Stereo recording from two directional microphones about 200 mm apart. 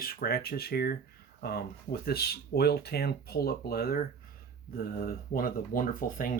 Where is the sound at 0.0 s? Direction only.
50° left (ahead or behind).